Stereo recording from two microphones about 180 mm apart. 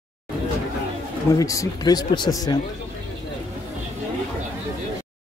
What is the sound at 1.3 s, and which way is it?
Speech, 20° left (ahead or behind).